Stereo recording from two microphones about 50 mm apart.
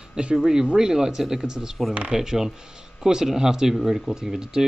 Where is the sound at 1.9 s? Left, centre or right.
Right.